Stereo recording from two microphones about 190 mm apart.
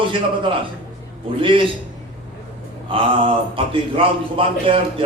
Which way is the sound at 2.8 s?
25° right (ahead or behind).